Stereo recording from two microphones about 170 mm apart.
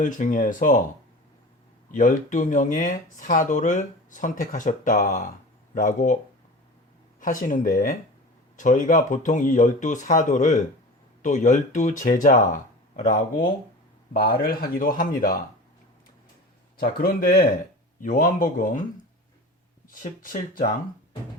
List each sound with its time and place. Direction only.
0.0 s speech: 50° left (ahead or behind)
1.9 s speech: 50° left (ahead or behind)
7.2 s speech: 50° left (ahead or behind)
16.7 s speech: 60° left (ahead or behind)